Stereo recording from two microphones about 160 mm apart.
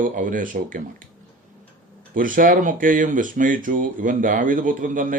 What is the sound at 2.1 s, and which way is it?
Speech, 55° right (ahead or behind).